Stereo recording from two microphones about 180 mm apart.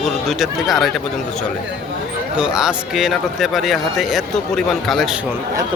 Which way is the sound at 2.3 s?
5° right (ahead or behind).